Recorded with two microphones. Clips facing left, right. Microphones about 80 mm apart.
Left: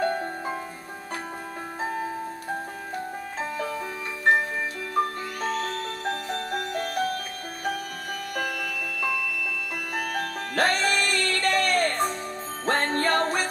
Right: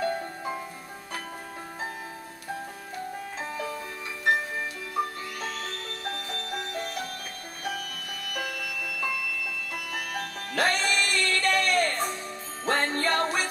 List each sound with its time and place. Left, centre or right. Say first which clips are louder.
0.0 s music: left 3 dB; left
5.4 s music: left 9 dB; left
9.9 s music: left 6 dB; left